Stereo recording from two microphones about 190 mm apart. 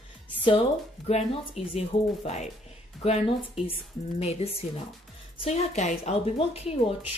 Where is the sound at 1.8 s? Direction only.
35° left (ahead or behind).